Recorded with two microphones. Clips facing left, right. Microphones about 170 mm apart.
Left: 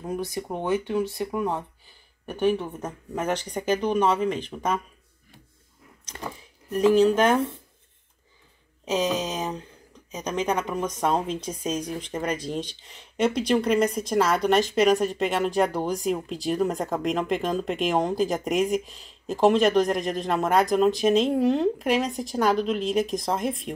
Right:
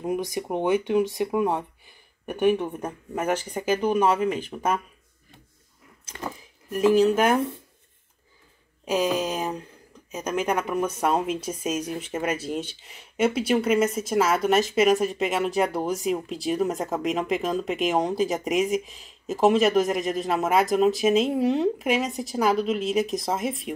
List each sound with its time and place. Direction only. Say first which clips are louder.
0.0 s speech: right 3 dB; 15° right (ahead or behind)
7.1 s speech: even; 10° right (ahead or behind)
8.8 s speech: right 1 dB; 10° right (ahead or behind)